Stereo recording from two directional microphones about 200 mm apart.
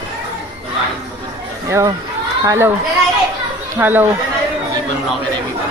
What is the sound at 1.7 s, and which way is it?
Speech, 15° right (ahead or behind).